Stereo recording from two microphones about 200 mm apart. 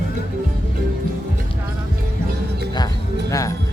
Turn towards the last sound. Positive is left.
turn(degrees=15)  # may be behind; listen again after turning